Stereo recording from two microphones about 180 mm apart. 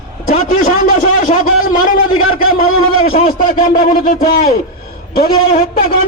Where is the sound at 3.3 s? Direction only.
50° left (ahead or behind).